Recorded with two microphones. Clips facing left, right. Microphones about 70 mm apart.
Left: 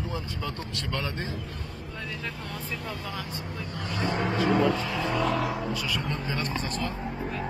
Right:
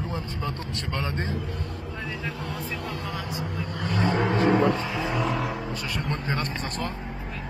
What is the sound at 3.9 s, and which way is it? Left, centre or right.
Speech, right.